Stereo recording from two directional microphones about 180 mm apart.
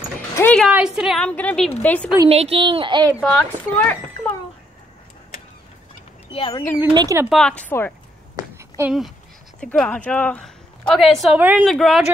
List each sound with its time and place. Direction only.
0.4 s a woman's voice: 5° left (ahead or behind)
0.7 s a woman's voice: 5° right (ahead or behind)
2.2 s speech: 35° right (ahead or behind)
3.1 s speech: 5° left (ahead or behind)
6.3 s speech: 30° left (ahead or behind)
6.9 s speech: 25° right (ahead or behind)
7.2 s speech: 5° left (ahead or behind)
8.5 s a sound: 15° right (ahead or behind)
9.6 s a woman's voice: 5° left (ahead or behind)